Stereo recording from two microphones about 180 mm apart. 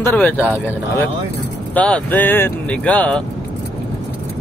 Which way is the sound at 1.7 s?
5° left (ahead or behind).